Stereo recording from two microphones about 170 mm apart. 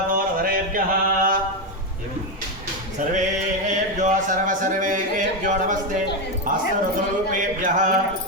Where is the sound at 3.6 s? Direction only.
50° right (ahead or behind).